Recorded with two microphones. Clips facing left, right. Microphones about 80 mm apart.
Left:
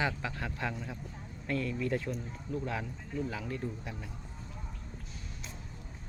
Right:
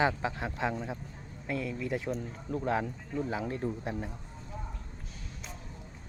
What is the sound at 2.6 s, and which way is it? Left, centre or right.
Speech, right.